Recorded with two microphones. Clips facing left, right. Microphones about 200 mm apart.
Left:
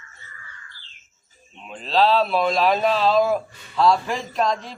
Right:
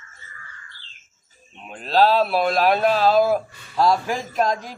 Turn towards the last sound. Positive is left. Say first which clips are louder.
# right 1 dB
turn(degrees=-5)  # may be behind; listen again after turning